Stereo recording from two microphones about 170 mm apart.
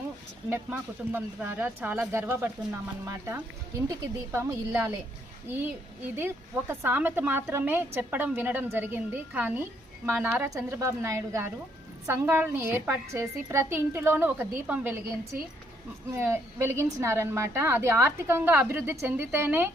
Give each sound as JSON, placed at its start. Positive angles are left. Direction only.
{"t": 0.5, "sound": "a woman's voice", "side_deg": -10}
{"t": 6.1, "sound": "a woman's voice", "side_deg": -15}